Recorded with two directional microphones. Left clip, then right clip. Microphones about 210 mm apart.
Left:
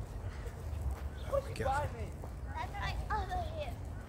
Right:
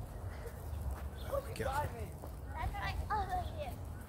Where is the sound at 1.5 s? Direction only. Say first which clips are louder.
Left 4 dB; 5° right (ahead or behind).